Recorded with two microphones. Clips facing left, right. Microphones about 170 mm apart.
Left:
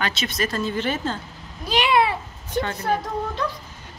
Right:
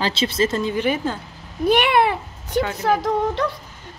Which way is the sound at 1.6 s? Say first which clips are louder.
Right 3 dB; 60° right (ahead or behind).